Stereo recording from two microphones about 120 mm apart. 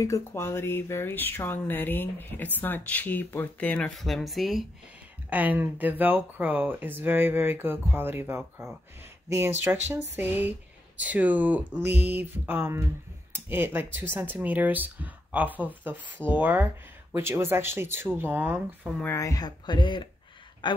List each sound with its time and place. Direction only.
0.0 s speech: 25° left (ahead or behind); by 4.6 s centre (ahead or behind)
5.3 s speech: 15° right (ahead or behind)
9.8 s speech: 15° right (ahead or behind)
19.0 s speech: 25° left (ahead or behind)